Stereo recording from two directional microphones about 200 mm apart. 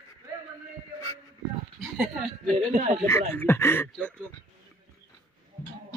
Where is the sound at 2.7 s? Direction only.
40° right (ahead or behind).